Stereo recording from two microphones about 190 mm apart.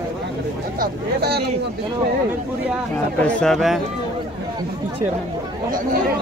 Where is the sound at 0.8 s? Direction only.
55° right (ahead or behind).